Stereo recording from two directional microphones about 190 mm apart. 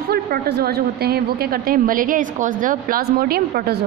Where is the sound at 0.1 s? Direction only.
55° right (ahead or behind).